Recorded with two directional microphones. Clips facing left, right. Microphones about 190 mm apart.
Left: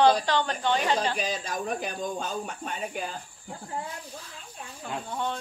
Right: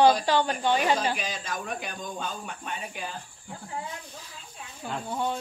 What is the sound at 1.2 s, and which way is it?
Speech, 35° left (ahead or behind).